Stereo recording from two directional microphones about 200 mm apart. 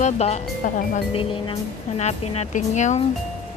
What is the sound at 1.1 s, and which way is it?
A woman's voice, 25° left (ahead or behind).